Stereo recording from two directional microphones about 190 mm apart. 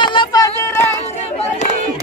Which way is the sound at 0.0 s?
25° left (ahead or behind).